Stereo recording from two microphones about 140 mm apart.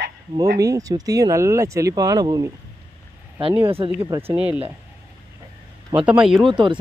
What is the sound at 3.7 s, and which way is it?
Speech, 40° right (ahead or behind).